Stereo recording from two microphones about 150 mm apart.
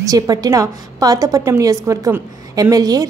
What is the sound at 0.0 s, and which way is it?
A woman's voice, 25° right (ahead or behind).